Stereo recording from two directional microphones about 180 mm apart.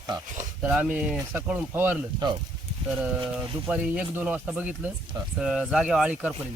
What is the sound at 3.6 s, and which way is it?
Speech, 5° right (ahead or behind).